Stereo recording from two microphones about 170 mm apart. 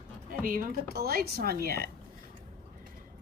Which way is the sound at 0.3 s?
55° right (ahead or behind).